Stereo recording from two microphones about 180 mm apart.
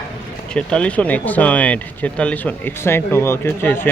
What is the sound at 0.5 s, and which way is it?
Speech, 5° left (ahead or behind).